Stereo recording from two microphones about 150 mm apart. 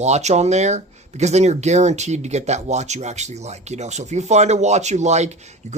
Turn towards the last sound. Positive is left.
turn(degrees=-50)  # may be behind; listen again after turning